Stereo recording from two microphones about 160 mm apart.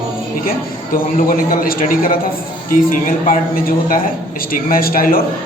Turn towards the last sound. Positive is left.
turn(degrees=65)  # may be behind; listen again after turning